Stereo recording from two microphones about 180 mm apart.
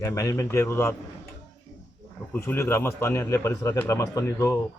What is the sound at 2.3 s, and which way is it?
Speech, 10° left (ahead or behind).